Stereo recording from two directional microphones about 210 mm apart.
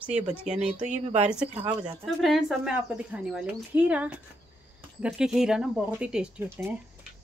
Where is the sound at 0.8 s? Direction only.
35° right (ahead or behind).